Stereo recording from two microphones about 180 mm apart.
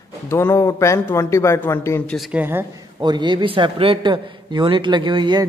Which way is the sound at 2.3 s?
10° right (ahead or behind).